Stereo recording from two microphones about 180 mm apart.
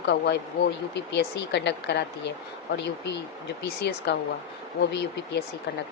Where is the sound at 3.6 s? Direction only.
70° left (ahead or behind).